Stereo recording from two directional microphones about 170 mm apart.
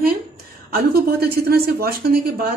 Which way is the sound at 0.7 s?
60° right (ahead or behind).